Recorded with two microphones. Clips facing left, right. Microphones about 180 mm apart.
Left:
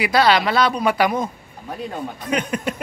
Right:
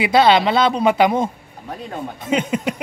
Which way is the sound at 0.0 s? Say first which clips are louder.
Right 3 dB; 25° right (ahead or behind).